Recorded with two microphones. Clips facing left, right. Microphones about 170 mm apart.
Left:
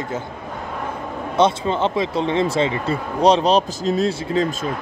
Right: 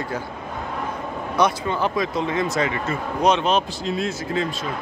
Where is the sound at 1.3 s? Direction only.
25° left (ahead or behind).